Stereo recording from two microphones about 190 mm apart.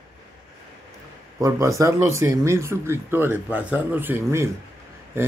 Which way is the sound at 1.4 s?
15° right (ahead or behind).